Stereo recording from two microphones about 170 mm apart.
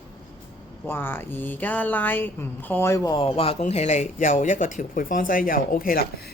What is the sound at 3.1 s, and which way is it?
Speech, 30° left (ahead or behind).